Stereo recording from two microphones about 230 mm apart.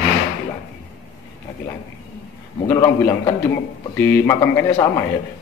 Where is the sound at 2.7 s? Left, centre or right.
Centre.